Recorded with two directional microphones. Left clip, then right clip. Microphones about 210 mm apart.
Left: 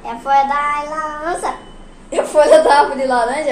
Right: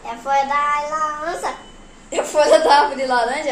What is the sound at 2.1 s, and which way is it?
A woman's voice, 10° right (ahead or behind).